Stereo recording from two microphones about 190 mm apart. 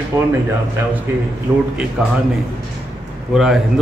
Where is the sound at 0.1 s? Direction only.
15° right (ahead or behind).